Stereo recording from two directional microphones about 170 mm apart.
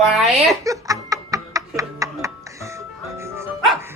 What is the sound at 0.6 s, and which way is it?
Music, 20° right (ahead or behind).